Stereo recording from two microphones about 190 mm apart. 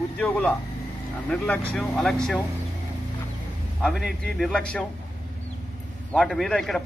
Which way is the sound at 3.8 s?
5° left (ahead or behind).